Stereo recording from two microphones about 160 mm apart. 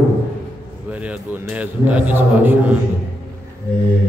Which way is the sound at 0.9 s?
10° right (ahead or behind).